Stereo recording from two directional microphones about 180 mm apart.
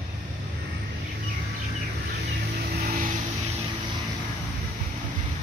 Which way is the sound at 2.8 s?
50° right (ahead or behind).